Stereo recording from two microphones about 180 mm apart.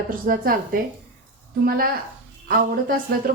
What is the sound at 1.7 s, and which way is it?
Speech, 55° right (ahead or behind).